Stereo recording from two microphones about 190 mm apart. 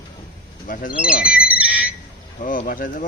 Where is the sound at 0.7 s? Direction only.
45° left (ahead or behind).